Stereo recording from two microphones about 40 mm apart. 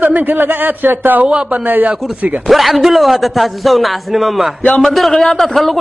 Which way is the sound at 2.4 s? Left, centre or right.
Centre.